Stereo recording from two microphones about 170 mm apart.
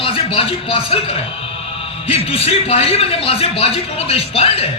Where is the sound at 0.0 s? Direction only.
35° left (ahead or behind).